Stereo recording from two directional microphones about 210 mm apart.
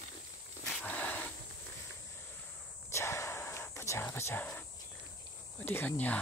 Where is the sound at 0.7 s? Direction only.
5° left (ahead or behind).